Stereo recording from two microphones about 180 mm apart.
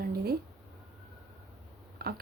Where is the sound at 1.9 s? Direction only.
60° right (ahead or behind).